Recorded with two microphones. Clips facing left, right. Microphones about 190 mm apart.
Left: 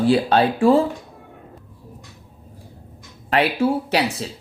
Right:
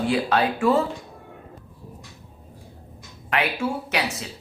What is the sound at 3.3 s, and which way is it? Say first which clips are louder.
Speech: left 6 dB; 35° left (ahead or behind).